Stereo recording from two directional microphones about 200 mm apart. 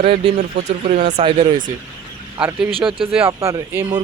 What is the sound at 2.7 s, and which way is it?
Speech, 25° right (ahead or behind).